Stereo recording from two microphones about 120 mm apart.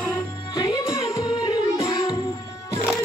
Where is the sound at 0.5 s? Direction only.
35° left (ahead or behind).